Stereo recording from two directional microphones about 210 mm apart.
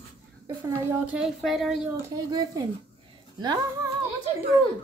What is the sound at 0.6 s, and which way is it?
A woman's voice, 10° right (ahead or behind).